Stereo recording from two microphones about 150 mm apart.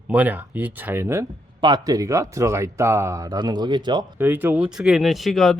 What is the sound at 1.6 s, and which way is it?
Speech, 30° right (ahead or behind).